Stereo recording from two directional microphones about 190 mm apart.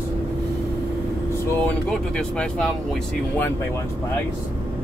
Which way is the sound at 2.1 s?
5° left (ahead or behind).